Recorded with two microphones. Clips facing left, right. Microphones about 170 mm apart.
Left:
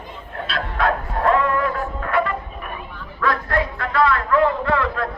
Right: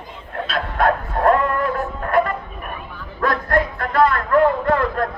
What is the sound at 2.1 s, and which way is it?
Music, 45° right (ahead or behind).